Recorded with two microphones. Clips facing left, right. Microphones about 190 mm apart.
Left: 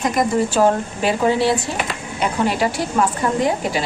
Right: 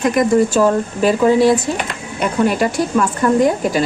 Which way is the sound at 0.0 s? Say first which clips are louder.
Right 5 dB; 55° right (ahead or behind).